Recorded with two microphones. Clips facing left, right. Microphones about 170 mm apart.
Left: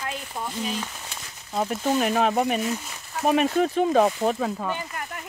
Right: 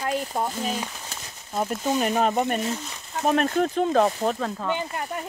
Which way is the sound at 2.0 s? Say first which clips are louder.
Even; centre (ahead or behind).